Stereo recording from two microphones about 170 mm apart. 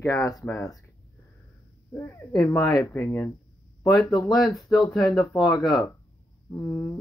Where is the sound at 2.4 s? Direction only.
20° left (ahead or behind).